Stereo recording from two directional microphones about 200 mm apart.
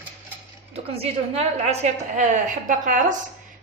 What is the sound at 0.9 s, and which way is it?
A woman's voice, 30° right (ahead or behind).